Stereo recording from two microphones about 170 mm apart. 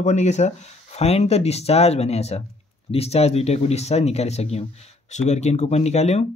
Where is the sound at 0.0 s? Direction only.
40° left (ahead or behind).